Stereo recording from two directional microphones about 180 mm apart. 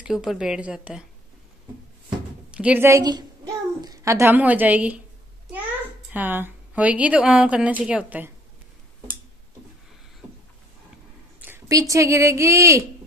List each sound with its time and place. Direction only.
0.0 s speech: centre (ahead or behind)
2.5 s a woman's voice: 10° right (ahead or behind)
6.1 s a woman's voice: 10° right (ahead or behind)
11.4 s a sound: 10° right (ahead or behind)
11.9 s a woman's voice: 15° right (ahead or behind)